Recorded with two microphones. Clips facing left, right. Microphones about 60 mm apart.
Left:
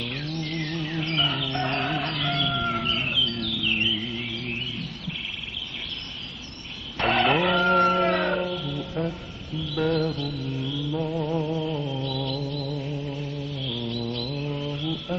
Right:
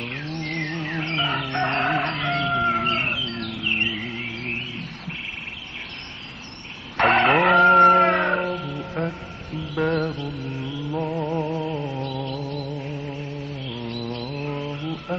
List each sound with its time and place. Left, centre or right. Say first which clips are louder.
0.0 s chicken: right 1 dB; right
2.9 s music: right 2 dB; right
7.0 s a sound: right 5 dB; right
8.5 s music: right 2 dB; right
13.7 s a sound: even; right
14.6 s mantra: even; right